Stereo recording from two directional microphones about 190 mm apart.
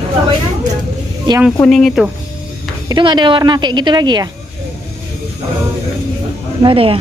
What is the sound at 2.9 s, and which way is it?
A woman's voice, 25° right (ahead or behind).